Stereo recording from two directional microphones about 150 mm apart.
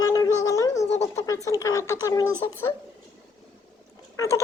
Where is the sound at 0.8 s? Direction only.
45° left (ahead or behind).